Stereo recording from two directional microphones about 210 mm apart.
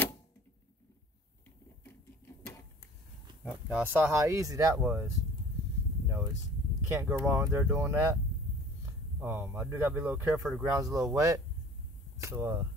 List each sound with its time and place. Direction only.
3.6 s speech: 5° right (ahead or behind)
6.9 s speech: 15° right (ahead or behind)
9.2 s speech: 10° right (ahead or behind)
10.7 s speech: 15° right (ahead or behind)
12.2 s a sound: 15° right (ahead or behind)